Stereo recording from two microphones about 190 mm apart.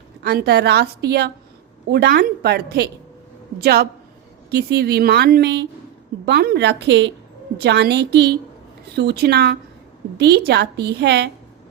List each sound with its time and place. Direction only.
0.2 s a woman's voice: 60° right (ahead or behind)